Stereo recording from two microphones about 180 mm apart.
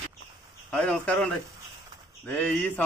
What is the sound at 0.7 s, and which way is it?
A man's voice, 5° left (ahead or behind).